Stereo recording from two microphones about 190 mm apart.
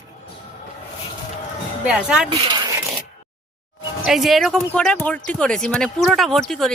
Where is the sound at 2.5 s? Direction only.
20° right (ahead or behind).